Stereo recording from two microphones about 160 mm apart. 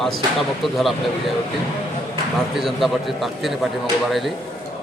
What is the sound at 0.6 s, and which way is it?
Speech, centre (ahead or behind).